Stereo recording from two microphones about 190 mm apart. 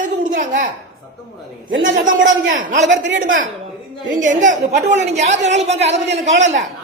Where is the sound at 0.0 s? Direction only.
45° right (ahead or behind).